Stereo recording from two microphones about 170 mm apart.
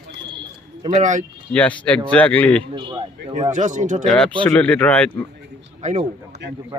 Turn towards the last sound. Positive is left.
turn(degrees=-45)  # may be behind; listen again after turning